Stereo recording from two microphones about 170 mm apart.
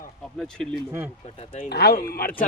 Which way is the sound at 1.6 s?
70° left (ahead or behind).